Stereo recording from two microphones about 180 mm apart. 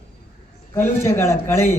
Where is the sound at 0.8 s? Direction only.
15° left (ahead or behind).